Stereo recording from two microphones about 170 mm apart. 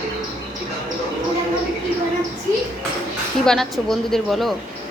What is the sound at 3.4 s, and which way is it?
A woman's voice, centre (ahead or behind).